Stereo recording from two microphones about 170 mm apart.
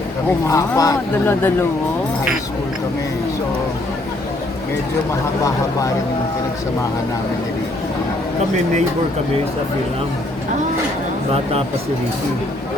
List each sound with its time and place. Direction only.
0.4 s speech: 20° left (ahead or behind)